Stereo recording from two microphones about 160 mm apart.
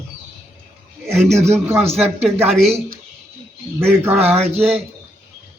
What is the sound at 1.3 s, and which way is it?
Speech, 15° right (ahead or behind).